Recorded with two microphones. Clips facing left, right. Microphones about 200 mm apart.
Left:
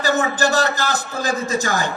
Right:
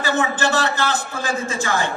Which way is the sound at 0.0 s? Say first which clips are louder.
Left 2 dB; 40° left (ahead or behind).